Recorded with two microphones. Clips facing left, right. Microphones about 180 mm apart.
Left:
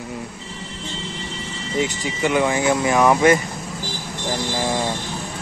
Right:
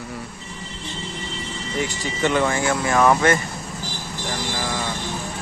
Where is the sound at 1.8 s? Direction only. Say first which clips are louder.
Left 2 dB; 10° left (ahead or behind).